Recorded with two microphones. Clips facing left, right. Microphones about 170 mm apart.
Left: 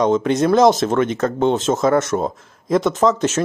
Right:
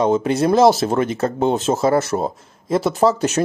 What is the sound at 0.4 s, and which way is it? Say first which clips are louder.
Speech: even; 30° right (ahead or behind).